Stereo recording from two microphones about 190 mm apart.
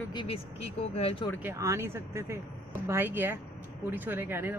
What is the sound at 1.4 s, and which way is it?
Speech, 15° right (ahead or behind).